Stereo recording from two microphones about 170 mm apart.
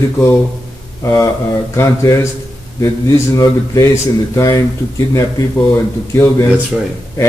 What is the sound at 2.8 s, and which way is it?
Speech, 20° left (ahead or behind).